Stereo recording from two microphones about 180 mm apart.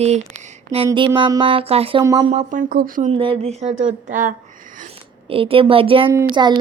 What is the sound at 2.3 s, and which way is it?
Speech, 45° right (ahead or behind).